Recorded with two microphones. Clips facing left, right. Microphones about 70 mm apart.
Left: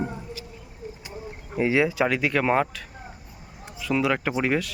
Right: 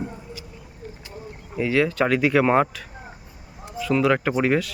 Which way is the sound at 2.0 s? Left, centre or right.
Centre.